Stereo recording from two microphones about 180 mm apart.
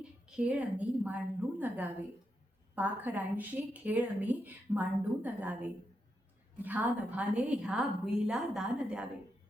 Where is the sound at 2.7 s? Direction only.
10° right (ahead or behind).